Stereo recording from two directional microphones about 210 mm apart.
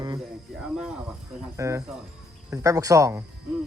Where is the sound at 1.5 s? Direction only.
15° right (ahead or behind).